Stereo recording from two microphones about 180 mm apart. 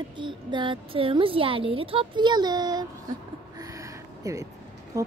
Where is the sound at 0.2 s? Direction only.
25° right (ahead or behind).